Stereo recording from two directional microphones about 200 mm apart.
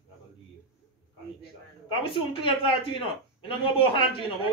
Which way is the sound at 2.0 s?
25° left (ahead or behind).